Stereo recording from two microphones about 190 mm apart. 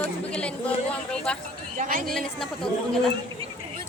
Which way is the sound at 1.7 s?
45° right (ahead or behind).